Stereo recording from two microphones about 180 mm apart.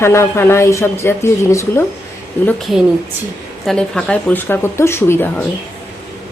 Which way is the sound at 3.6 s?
5° left (ahead or behind).